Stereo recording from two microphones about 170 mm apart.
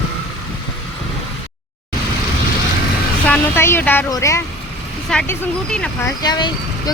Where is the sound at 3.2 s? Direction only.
10° left (ahead or behind).